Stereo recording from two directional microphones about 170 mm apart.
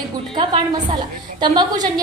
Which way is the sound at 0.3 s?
25° right (ahead or behind).